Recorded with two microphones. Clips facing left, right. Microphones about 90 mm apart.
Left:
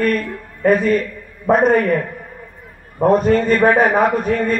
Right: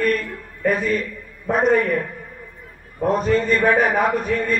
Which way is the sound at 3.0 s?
45° left (ahead or behind).